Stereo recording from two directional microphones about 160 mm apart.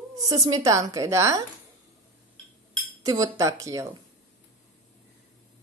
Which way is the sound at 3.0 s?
20° right (ahead or behind).